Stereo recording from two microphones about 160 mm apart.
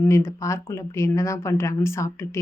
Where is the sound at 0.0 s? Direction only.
15° left (ahead or behind).